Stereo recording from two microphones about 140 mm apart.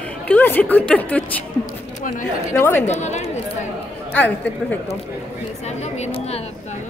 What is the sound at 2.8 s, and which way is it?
Speech, 55° left (ahead or behind).